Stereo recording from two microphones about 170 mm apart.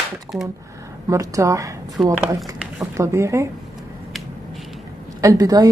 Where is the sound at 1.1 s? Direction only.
20° right (ahead or behind).